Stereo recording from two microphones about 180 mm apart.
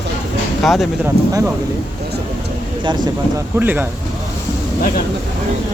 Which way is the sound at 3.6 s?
10° right (ahead or behind).